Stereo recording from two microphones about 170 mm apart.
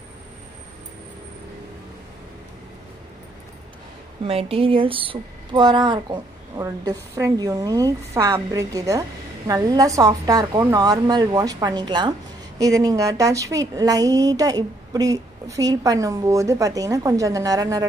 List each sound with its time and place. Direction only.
4.2 s a woman's voice: 35° right (ahead or behind); by 17.8 s 20° right (ahead or behind)